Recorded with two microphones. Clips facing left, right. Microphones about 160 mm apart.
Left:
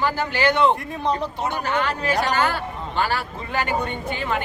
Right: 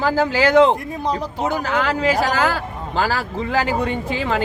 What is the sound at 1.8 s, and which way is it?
Speech, 90° right.